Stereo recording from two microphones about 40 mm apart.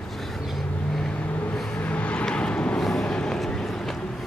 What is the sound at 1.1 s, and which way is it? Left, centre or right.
Vehicle, left.